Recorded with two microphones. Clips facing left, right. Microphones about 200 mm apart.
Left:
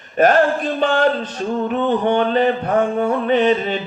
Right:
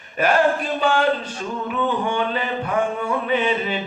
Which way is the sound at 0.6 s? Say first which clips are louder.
Left 3 dB; 40° left (ahead or behind).